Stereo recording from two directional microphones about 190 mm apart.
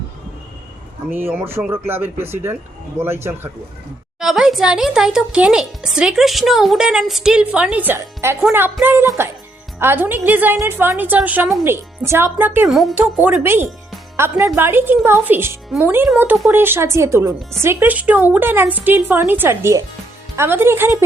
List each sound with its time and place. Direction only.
1.1 s a woman's voice: 10° right (ahead or behind)
4.2 s a woman's voice: centre (ahead or behind)